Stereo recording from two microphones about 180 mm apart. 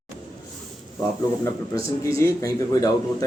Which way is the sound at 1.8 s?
15° left (ahead or behind).